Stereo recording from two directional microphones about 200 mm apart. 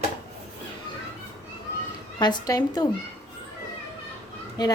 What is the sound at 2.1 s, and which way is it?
Speech, 20° left (ahead or behind).